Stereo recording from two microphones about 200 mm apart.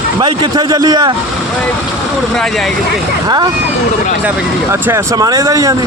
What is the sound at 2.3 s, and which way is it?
Speech, centre (ahead or behind).